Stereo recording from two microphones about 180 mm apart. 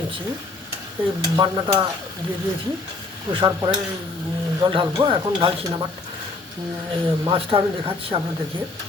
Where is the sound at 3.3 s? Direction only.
25° right (ahead or behind).